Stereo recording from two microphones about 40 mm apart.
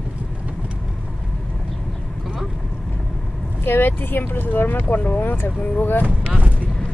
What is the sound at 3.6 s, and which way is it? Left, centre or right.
Speech, left.